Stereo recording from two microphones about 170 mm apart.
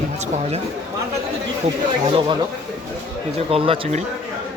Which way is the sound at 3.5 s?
35° right (ahead or behind).